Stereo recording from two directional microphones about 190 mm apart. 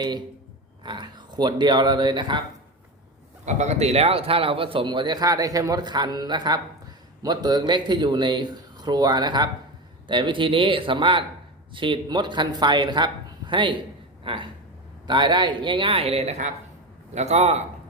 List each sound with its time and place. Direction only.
0.9 s a man's voice: 25° right (ahead or behind)
3.4 s a man's voice: 35° right (ahead or behind)